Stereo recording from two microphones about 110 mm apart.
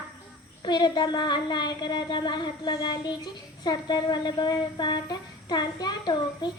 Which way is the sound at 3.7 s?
40° left (ahead or behind).